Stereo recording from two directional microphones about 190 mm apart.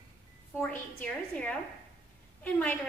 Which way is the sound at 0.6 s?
10° left (ahead or behind).